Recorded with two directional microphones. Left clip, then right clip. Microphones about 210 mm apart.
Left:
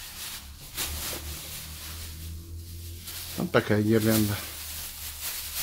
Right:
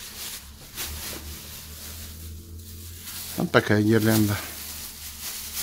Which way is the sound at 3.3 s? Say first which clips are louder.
Right 4 dB; 50° right (ahead or behind).